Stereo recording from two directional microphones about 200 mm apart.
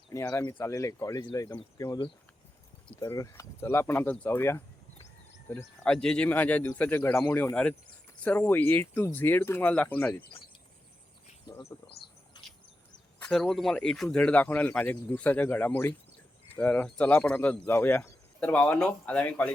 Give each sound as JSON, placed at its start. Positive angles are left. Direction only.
{"t": 0.1, "sound": "speech", "side_deg": 15}
{"t": 11.4, "sound": "speech", "side_deg": 15}
{"t": 12.4, "sound": "bird", "side_deg": 20}
{"t": 13.1, "sound": "speech", "side_deg": 5}